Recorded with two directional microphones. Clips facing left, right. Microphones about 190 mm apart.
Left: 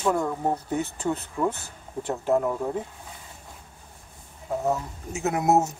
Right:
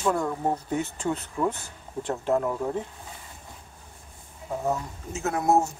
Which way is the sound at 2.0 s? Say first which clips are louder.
Left 2 dB; 5° left (ahead or behind).